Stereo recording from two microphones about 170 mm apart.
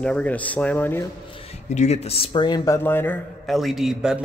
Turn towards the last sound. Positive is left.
turn(degrees=-5)  # may be behind; listen again after turning